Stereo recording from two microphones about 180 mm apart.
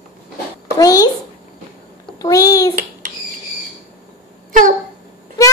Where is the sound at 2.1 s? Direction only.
20° left (ahead or behind).